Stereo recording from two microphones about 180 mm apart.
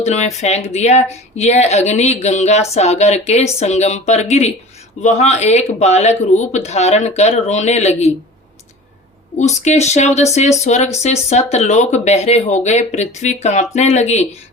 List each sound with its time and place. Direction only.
0.0 s speech: 40° left (ahead or behind)
9.4 s speech: 40° left (ahead or behind)